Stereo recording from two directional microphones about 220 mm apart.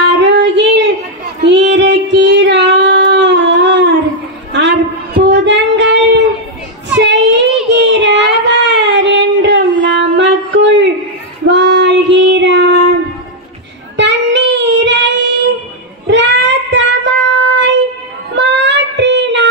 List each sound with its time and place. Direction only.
0.2 s child singing: 50° right (ahead or behind)
7.1 s child singing: 55° right (ahead or behind)
7.7 s a sound: 55° right (ahead or behind)
11.4 s child singing: 50° right (ahead or behind)
13.9 s child singing: 55° right (ahead or behind)